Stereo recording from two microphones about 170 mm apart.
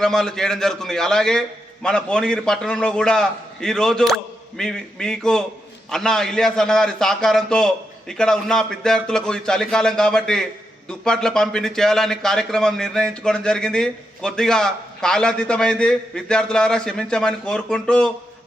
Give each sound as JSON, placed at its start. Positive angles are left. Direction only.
{"t": 0.0, "sound": "a man's voice", "side_deg": 5}